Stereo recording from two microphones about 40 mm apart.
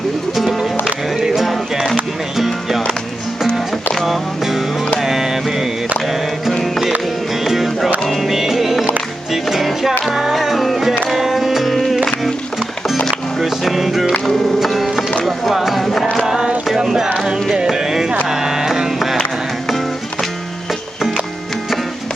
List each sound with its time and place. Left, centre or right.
0.3 s music: centre
4.9 s mantra: centre
6.1 s music: centre
15.2 s a sound: centre
16.2 s a sound: centre
16.6 s music: centre